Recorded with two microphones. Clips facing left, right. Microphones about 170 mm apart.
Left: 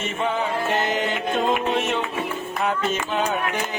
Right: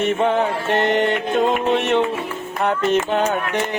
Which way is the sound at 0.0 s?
60° right (ahead or behind).